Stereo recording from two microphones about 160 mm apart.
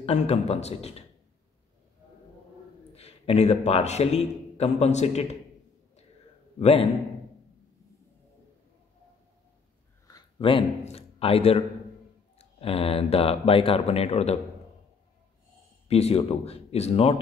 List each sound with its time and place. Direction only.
0.0 s speech: 40° left (ahead or behind)
2.9 s a man's voice: 40° left (ahead or behind)
6.6 s speech: 40° left (ahead or behind)
10.4 s a man's voice: 35° left (ahead or behind)
15.9 s speech: 40° left (ahead or behind)